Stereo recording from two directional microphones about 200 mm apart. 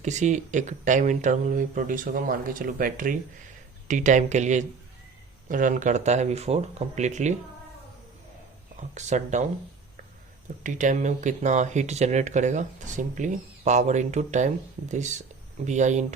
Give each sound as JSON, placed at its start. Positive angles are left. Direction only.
{"t": 0.0, "sound": "speech", "side_deg": -35}
{"t": 8.7, "sound": "speech", "side_deg": -35}
{"t": 10.6, "sound": "speech", "side_deg": -40}